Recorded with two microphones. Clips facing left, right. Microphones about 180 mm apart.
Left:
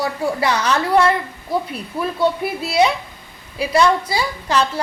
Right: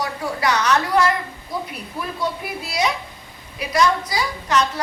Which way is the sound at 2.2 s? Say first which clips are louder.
Left 8 dB; 30° left (ahead or behind).